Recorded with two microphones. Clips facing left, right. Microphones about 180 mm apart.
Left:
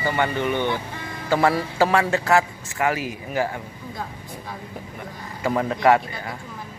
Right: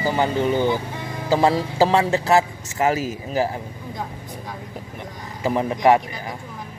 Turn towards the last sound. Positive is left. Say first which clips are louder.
# right 1 dB
turn(degrees=-20)  # may be behind; listen again after turning